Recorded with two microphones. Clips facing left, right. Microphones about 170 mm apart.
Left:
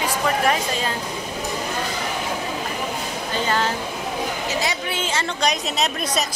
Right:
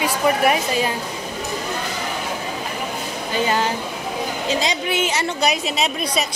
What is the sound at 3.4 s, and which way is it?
A woman's voice, 15° right (ahead or behind).